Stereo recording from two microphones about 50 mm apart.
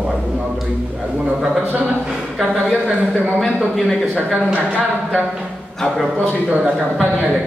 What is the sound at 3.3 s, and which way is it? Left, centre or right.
Speech, centre.